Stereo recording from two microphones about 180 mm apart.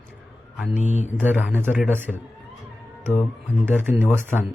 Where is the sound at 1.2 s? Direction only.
10° right (ahead or behind).